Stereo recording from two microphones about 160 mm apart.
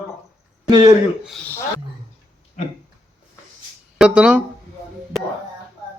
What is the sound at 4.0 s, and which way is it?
Speech, 5° right (ahead or behind).